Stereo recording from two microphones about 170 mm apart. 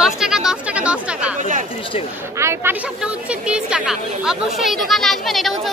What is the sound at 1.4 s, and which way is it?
Speech, 45° right (ahead or behind).